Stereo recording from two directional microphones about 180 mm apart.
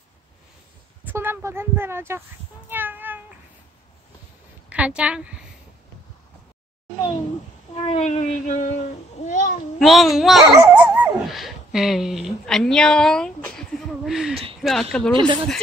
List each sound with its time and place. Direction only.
1.0 s a woman's voice: 10° right (ahead or behind)
2.7 s cat: 10° right (ahead or behind)
4.6 s a woman's voice: 5° right (ahead or behind)
7.7 s a sound: 30° left (ahead or behind)
8.0 s a sound: 40° left (ahead or behind)
9.8 s a child's voice: centre (ahead or behind)
10.5 s dog: 10° right (ahead or behind); by 13.5 s 5° left (ahead or behind)
14.0 s a sound: centre (ahead or behind)
14.6 s speech: centre (ahead or behind)
15.1 s speech: 25° right (ahead or behind)